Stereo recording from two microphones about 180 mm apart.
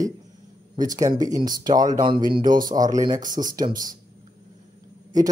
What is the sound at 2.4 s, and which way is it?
Speech, 50° right (ahead or behind).